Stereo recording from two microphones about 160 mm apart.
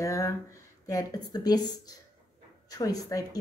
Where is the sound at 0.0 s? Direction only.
20° left (ahead or behind).